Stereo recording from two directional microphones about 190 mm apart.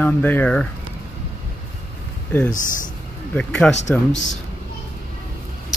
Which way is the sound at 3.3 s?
5° left (ahead or behind).